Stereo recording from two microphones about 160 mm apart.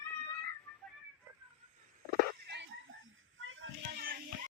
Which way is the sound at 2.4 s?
90° right.